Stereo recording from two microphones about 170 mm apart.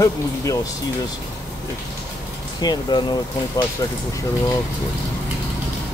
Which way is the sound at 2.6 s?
25° left (ahead or behind).